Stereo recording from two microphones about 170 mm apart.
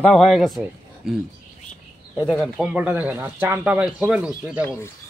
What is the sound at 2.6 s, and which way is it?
Speech, 10° right (ahead or behind).